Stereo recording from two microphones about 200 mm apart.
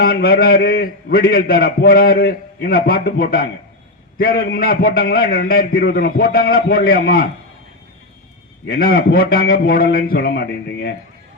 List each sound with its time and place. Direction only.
0.0 s a man's voice: 50° left (ahead or behind)
8.6 s a man's voice: 50° left (ahead or behind)